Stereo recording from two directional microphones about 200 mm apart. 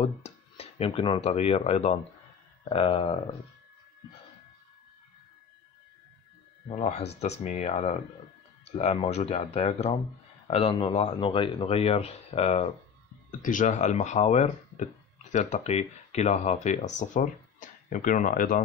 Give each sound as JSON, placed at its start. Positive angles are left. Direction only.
{"t": 0.0, "sound": "speech", "side_deg": 30}
{"t": 6.7, "sound": "speech", "side_deg": 35}